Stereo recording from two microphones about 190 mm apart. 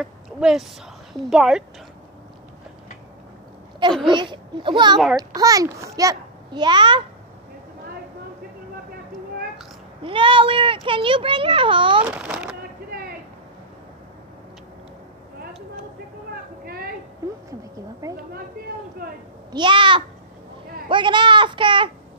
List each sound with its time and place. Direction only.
0.0 s a woman's voice: centre (ahead or behind)
4.1 s a child's voice: 25° right (ahead or behind)
10.0 s a child's voice: 25° right (ahead or behind)
12.1 s a child's voice: 5° right (ahead or behind)
16.6 s a sound: 50° right (ahead or behind)
17.2 s a sound: 15° right (ahead or behind)
19.5 s a child's voice: 25° right (ahead or behind)